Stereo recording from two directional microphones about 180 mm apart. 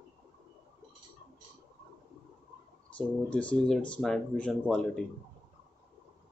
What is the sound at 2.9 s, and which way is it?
Speech, 5° left (ahead or behind).